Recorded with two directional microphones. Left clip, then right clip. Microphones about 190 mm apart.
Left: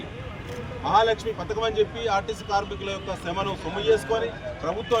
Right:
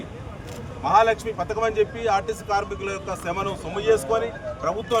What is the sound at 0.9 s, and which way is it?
A man's voice, 20° right (ahead or behind).